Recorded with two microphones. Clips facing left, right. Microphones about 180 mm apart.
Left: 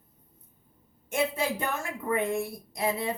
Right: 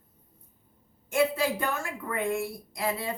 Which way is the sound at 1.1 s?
20° left (ahead or behind).